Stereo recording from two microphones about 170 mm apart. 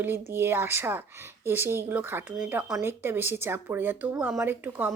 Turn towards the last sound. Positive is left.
turn(degrees=-10)  # may be behind; listen again after turning